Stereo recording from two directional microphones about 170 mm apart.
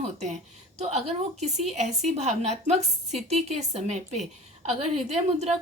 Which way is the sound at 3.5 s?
40° right (ahead or behind).